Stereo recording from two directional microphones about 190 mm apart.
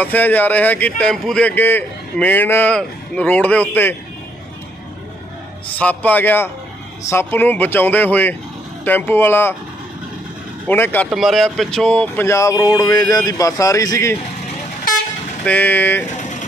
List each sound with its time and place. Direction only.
0.0 s speech: 10° left (ahead or behind)
5.8 s speech: 10° left (ahead or behind)
10.7 s speech: 10° left (ahead or behind)
11.1 s speech: centre (ahead or behind); by 14.1 s 15° left (ahead or behind)
15.4 s speech: 10° left (ahead or behind)
16.2 s a sound: 40° left (ahead or behind)